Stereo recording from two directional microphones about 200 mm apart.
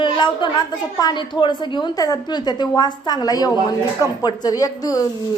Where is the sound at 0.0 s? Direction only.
25° left (ahead or behind).